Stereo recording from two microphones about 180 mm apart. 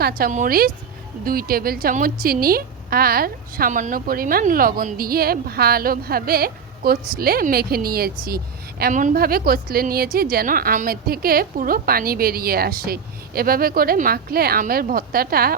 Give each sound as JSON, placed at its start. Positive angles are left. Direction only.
{"t": 0.0, "sound": "a woman's voice", "side_deg": -55}
{"t": 8.8, "sound": "a woman's voice", "side_deg": -45}